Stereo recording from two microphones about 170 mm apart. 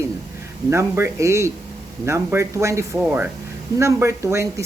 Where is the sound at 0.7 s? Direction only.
15° right (ahead or behind).